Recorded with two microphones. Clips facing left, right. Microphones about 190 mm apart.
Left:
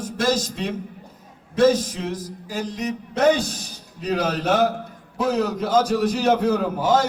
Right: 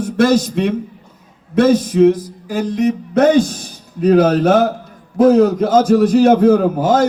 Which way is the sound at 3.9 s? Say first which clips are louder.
Right 12 dB; 50° right (ahead or behind).